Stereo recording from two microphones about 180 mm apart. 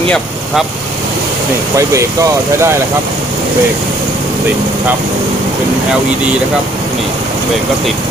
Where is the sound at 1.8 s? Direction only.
15° right (ahead or behind).